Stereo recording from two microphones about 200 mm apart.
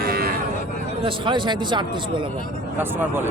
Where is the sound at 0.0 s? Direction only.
50° right (ahead or behind).